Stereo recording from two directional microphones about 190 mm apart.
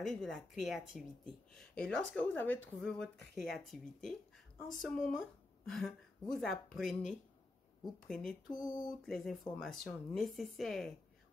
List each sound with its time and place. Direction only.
0.0 s speech: centre (ahead or behind)
8.5 s a sound: 20° left (ahead or behind)
9.0 s speech: centre (ahead or behind)